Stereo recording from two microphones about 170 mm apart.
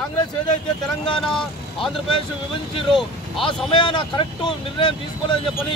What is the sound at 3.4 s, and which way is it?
Speech, 25° left (ahead or behind).